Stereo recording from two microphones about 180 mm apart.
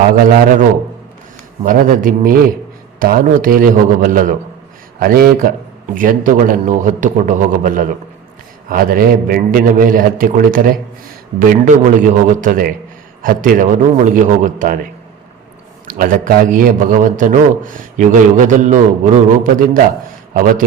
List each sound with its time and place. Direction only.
0.2 s a man's voice: 50° right (ahead or behind)
15.9 s a man's voice: 50° right (ahead or behind)